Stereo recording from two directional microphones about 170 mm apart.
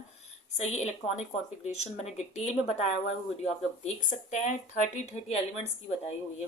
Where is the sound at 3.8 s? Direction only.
45° left (ahead or behind).